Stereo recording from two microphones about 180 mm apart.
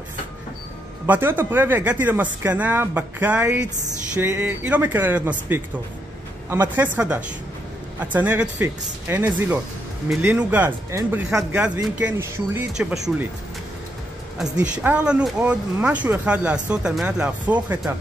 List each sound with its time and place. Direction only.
1.0 s speech: 10° right (ahead or behind)
14.4 s speech: 10° right (ahead or behind)